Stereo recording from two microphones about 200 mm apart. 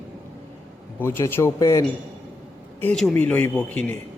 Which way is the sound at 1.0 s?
10° left (ahead or behind).